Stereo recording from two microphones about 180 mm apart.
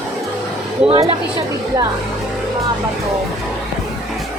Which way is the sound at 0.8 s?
35° right (ahead or behind).